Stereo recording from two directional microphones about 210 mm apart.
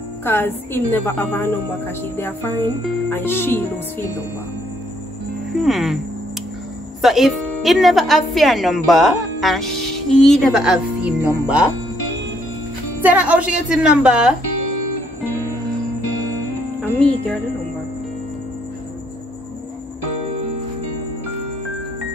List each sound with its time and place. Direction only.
0.2 s a woman's voice: 10° left (ahead or behind)
5.6 s a woman's voice: centre (ahead or behind)
7.0 s a woman's voice: centre (ahead or behind)
13.0 s a woman's voice: 5° right (ahead or behind)
16.8 s music: 5° left (ahead or behind)